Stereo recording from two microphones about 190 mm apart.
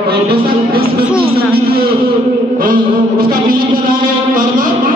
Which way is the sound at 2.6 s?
50° right (ahead or behind).